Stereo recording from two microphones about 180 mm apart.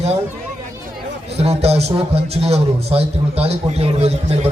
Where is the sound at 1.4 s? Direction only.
35° right (ahead or behind).